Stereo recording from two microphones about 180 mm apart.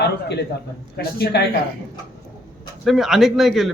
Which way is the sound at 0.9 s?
65° left (ahead or behind).